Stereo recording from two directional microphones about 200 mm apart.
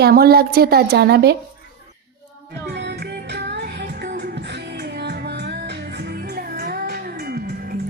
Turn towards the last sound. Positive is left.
turn(degrees=-50)  # may be behind; listen again after turning